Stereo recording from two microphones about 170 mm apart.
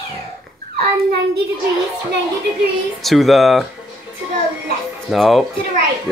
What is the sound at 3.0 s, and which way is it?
Speech, centre (ahead or behind).